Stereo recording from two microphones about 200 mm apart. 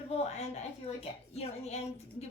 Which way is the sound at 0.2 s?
30° left (ahead or behind).